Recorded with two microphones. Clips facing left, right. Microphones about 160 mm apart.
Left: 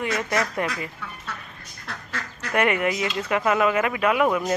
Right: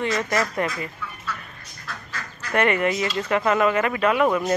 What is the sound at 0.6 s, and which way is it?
Speech, 15° left (ahead or behind).